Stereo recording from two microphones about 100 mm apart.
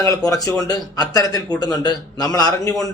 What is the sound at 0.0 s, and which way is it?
A man's voice, 35° left (ahead or behind).